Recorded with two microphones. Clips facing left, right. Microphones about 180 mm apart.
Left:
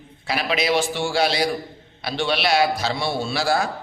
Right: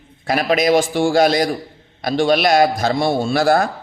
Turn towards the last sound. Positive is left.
turn(degrees=-55)  # may be behind; listen again after turning